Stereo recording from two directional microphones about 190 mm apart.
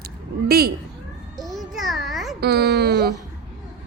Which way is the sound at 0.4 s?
55° right (ahead or behind).